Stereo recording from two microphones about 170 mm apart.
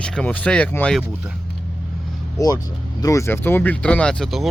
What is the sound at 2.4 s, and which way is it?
Speech, 20° left (ahead or behind).